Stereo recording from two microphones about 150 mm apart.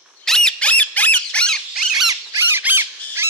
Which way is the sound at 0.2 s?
5° left (ahead or behind).